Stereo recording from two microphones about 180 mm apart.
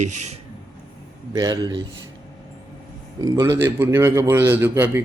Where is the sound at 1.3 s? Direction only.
20° right (ahead or behind).